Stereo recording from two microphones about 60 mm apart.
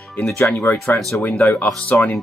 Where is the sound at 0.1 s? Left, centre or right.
Left.